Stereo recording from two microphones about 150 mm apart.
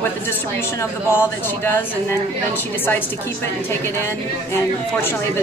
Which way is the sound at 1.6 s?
15° left (ahead or behind).